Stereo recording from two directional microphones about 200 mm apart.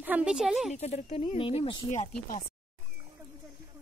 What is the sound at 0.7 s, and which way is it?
Speech, 30° left (ahead or behind).